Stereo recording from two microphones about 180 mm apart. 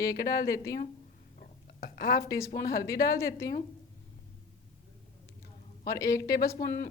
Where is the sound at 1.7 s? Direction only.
55° left (ahead or behind).